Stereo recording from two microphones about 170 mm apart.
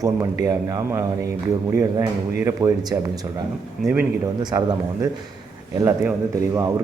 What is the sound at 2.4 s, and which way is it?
Speech, 20° right (ahead or behind).